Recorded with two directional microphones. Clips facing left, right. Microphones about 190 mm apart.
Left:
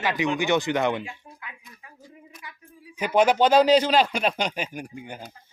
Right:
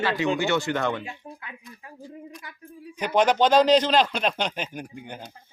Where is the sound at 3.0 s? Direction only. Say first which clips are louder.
Left 1 dB; 10° left (ahead or behind).